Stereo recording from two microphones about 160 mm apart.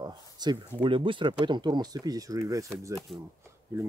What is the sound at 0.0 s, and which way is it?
Speech, 25° right (ahead or behind).